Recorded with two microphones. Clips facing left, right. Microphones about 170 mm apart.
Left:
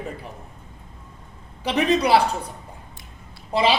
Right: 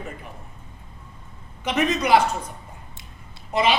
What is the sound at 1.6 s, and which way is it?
Speech, 35° left (ahead or behind).